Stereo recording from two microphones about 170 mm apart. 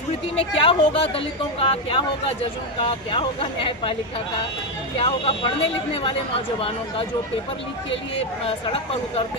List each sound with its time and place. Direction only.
0.3 s speech: 30° left (ahead or behind)
3.1 s speech: 30° left (ahead or behind)
4.9 s speech: 35° left (ahead or behind)
8.4 s speech: 35° left (ahead or behind)